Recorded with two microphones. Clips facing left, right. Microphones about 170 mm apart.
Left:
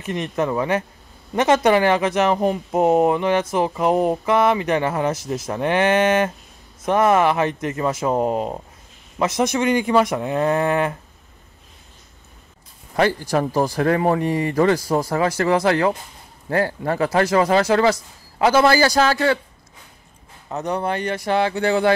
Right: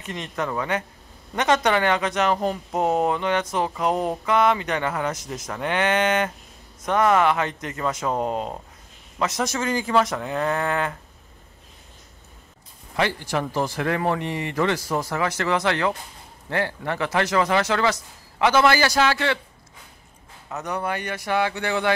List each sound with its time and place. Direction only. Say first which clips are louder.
0.0 s speech: left 6 dB; 20° left (ahead or behind)
12.9 s speech: left 5 dB; 40° left (ahead or behind)
20.4 s speech: left 4 dB; 30° left (ahead or behind)